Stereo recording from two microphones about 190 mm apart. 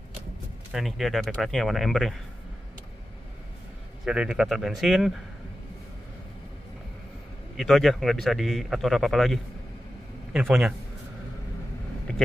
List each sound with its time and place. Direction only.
0.7 s a man's voice: centre (ahead or behind)
4.0 s a man's voice: 5° right (ahead or behind)
7.5 s a man's voice: centre (ahead or behind)
12.1 s a sound: 5° left (ahead or behind)